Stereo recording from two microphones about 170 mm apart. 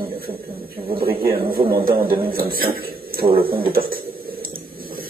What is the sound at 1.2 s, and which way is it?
A man's voice, 60° right (ahead or behind).